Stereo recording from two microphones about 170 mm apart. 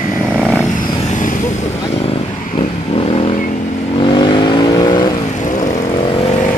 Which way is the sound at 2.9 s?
30° left (ahead or behind).